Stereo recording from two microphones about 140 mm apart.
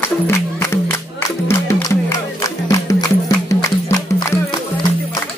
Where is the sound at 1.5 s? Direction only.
20° left (ahead or behind).